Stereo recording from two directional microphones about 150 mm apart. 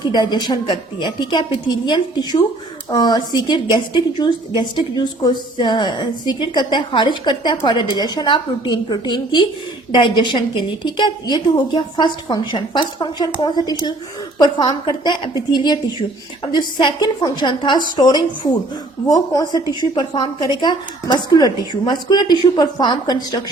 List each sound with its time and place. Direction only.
0.0 s a woman's voice: 30° left (ahead or behind)